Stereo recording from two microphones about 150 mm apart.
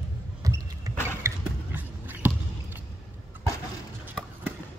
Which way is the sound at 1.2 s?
20° right (ahead or behind).